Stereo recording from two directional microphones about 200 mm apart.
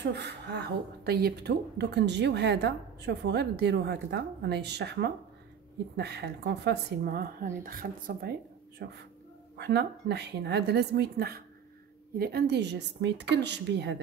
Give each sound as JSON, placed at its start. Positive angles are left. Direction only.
{"t": 0.0, "sound": "speech", "side_deg": -60}